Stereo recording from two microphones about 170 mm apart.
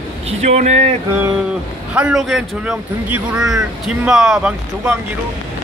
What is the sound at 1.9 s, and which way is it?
Speech, 5° right (ahead or behind).